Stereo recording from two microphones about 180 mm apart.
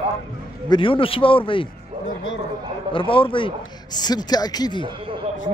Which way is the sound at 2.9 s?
30° left (ahead or behind).